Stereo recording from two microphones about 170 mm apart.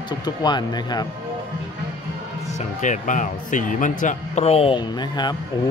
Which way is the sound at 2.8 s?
45° left (ahead or behind).